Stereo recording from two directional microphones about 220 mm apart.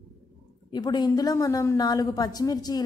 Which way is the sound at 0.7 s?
20° left (ahead or behind).